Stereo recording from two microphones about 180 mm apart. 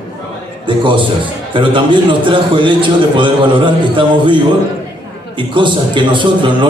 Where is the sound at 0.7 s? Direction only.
25° right (ahead or behind).